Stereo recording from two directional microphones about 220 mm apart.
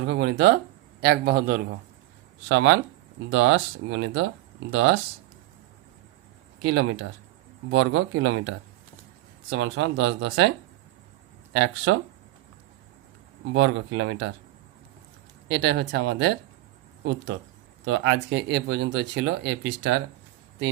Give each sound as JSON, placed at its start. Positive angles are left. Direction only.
{"t": 0.1, "sound": "speech", "side_deg": -50}
{"t": 2.5, "sound": "speech", "side_deg": -60}
{"t": 6.6, "sound": "speech", "side_deg": -55}
{"t": 11.5, "sound": "speech", "side_deg": -55}
{"t": 13.5, "sound": "speech", "side_deg": -60}
{"t": 15.4, "sound": "speech", "side_deg": -50}
{"t": 17.8, "sound": "speech", "side_deg": -55}